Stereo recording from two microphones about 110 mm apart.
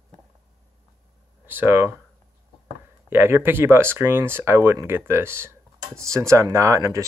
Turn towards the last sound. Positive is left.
turn(degrees=-25)  # may be behind; listen again after turning